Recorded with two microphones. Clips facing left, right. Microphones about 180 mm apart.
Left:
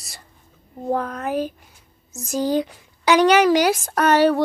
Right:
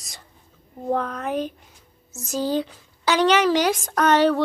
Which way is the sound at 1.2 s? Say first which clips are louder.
Left 2 dB; 5° left (ahead or behind).